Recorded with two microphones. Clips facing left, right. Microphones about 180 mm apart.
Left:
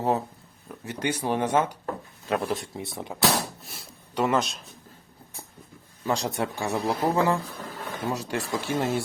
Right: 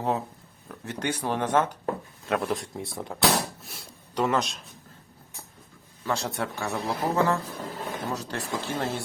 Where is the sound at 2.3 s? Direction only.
Centre (ahead or behind).